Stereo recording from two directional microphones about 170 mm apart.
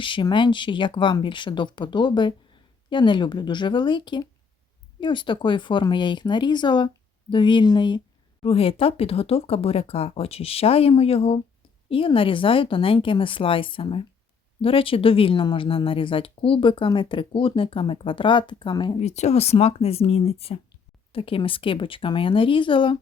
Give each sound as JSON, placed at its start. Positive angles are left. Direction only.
{"t": 0.0, "sound": "speech", "side_deg": 30}
{"t": 18.9, "sound": "speech", "side_deg": 40}